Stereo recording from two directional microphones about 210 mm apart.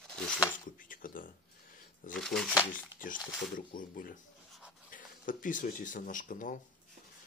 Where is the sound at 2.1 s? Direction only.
Centre (ahead or behind).